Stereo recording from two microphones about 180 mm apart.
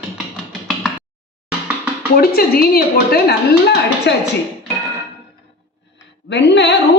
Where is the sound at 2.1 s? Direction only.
55° left (ahead or behind).